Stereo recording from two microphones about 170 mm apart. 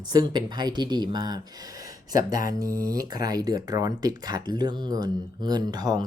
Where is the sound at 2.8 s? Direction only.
20° right (ahead or behind).